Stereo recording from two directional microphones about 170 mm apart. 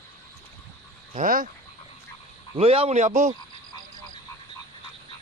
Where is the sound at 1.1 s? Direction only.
55° right (ahead or behind).